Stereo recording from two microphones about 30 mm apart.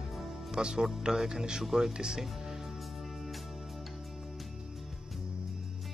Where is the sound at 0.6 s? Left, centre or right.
Right.